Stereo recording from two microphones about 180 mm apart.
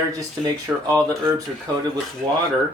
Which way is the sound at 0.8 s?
20° right (ahead or behind).